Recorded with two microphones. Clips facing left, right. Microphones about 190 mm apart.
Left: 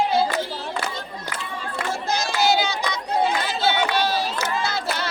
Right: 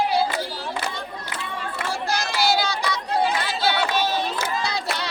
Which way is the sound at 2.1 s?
20° left (ahead or behind).